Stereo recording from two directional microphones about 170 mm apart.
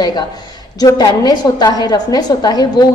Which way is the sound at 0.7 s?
20° left (ahead or behind).